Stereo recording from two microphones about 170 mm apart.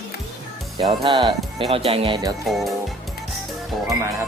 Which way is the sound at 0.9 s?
30° right (ahead or behind).